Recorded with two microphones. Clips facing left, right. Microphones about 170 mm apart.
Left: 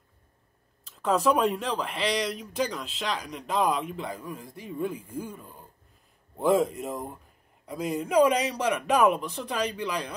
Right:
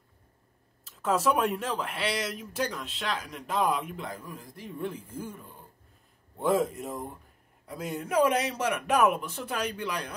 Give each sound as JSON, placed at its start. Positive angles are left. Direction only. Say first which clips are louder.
{"t": 0.8, "sound": "speech", "louder": "left 2 dB", "side_deg": -5}
{"t": 6.4, "sound": "speech", "louder": "left 3 dB", "side_deg": 0}